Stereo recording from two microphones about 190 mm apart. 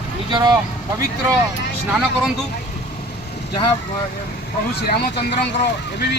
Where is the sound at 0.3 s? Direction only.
20° right (ahead or behind).